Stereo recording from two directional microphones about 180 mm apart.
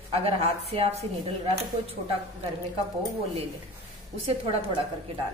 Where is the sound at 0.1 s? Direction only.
35° right (ahead or behind).